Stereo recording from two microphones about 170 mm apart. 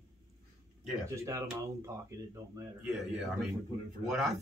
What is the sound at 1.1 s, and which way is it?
Speech, 15° right (ahead or behind).